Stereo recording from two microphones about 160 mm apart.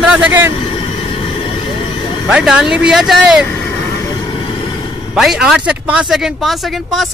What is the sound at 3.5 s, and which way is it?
Vehicle, 15° left (ahead or behind).